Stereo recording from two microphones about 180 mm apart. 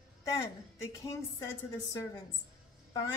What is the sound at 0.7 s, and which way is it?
Speech, 20° left (ahead or behind).